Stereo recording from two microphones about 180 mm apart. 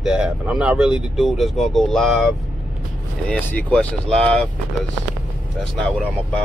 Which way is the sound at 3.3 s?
5° left (ahead or behind).